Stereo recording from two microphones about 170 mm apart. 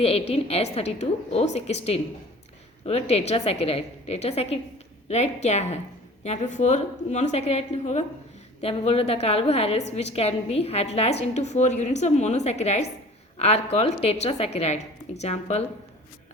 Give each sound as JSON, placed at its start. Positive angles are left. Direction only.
{"t": 0.0, "sound": "a woman's voice", "side_deg": 35}